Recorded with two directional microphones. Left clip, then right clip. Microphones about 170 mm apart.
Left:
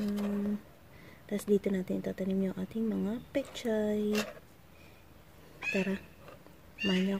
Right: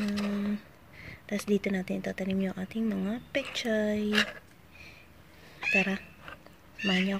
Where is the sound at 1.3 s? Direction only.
20° left (ahead or behind).